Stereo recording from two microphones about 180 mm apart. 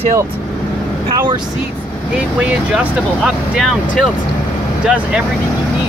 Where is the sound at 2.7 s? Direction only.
5° right (ahead or behind).